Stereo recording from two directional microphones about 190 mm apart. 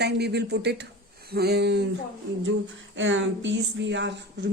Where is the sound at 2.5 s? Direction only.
80° right.